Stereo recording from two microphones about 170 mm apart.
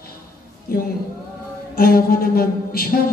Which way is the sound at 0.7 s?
60° left (ahead or behind).